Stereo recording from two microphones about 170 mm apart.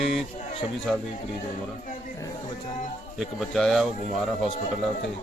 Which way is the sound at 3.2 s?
Centre (ahead or behind).